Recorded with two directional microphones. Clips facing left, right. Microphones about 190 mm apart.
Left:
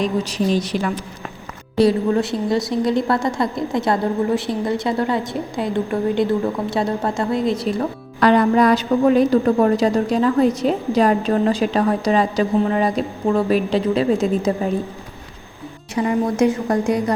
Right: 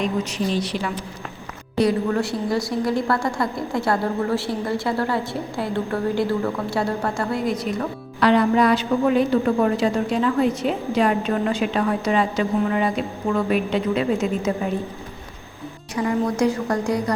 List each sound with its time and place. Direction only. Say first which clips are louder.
0.0 s speech: left 3 dB; 40° left (ahead or behind)
1.8 s a woman's voice: left 4 dB; 25° left (ahead or behind)
8.2 s a woman's voice: left 3 dB; 45° left (ahead or behind)
16.0 s a woman's voice: left 3 dB; 20° left (ahead or behind)